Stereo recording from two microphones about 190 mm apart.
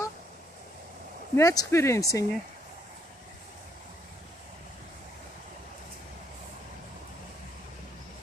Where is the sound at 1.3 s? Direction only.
20° left (ahead or behind).